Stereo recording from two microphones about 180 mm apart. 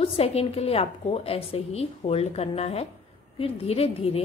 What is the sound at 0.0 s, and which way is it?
A woman's voice, 35° left (ahead or behind).